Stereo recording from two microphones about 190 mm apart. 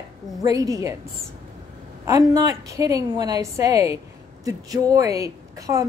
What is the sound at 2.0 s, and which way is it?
A woman's voice, 20° right (ahead or behind).